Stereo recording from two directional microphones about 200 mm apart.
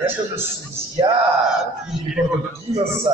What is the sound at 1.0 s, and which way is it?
Speech, 20° right (ahead or behind).